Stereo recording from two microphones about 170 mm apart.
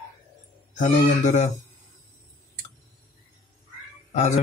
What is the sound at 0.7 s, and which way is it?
Speech, 45° left (ahead or behind).